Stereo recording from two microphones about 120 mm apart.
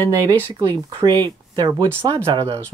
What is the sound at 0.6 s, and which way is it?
Speech, 35° right (ahead or behind).